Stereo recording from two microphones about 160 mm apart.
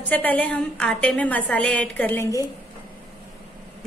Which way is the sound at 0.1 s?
10° left (ahead or behind).